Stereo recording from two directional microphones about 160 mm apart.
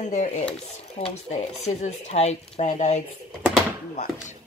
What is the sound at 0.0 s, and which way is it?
Speech, 45° left (ahead or behind).